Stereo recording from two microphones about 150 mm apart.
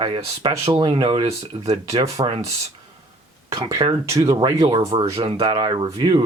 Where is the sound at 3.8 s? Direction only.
35° right (ahead or behind).